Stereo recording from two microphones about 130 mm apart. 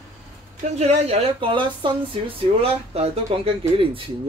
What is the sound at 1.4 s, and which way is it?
Speech, 40° right (ahead or behind).